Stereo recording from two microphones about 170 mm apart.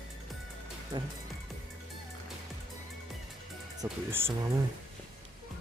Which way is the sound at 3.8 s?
10° right (ahead or behind).